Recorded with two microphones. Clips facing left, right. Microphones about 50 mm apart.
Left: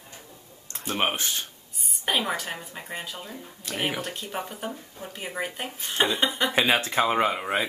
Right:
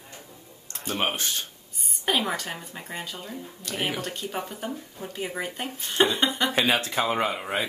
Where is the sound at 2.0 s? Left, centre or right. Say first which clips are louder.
Right 1 dB; centre.